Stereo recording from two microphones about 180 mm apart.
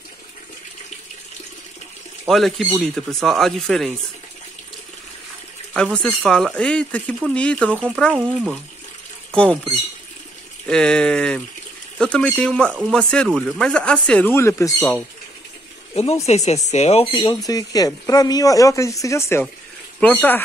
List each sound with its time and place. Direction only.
2.2 s speech: centre (ahead or behind)
5.7 s speech: 5° left (ahead or behind)
10.7 s speech: 5° left (ahead or behind)
15.9 s speech: 35° left (ahead or behind); by 20.4 s 10° left (ahead or behind)